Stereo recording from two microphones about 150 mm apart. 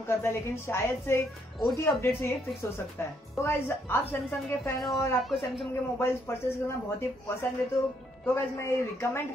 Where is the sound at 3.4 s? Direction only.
15° left (ahead or behind).